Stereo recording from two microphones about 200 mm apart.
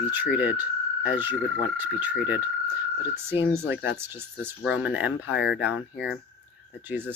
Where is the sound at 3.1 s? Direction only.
10° right (ahead or behind).